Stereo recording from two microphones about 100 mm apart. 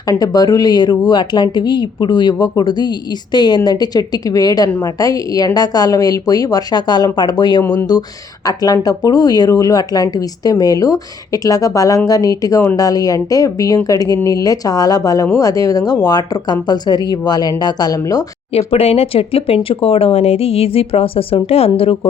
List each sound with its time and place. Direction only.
0.1 s speech: 40° left (ahead or behind)
18.5 s speech: 80° left